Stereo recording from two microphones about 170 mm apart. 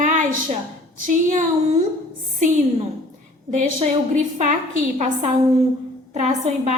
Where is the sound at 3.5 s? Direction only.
50° right (ahead or behind).